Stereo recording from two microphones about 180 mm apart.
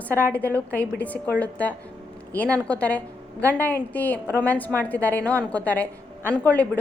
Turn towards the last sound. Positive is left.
turn(degrees=10)  # may be behind; listen again after turning